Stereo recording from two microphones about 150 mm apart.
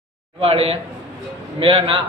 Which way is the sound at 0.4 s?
40° right (ahead or behind).